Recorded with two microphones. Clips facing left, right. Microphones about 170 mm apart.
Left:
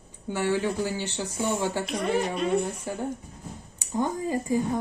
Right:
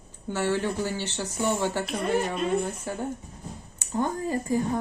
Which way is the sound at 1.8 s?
5° right (ahead or behind).